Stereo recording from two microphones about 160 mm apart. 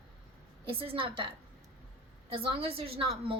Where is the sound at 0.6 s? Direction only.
35° right (ahead or behind).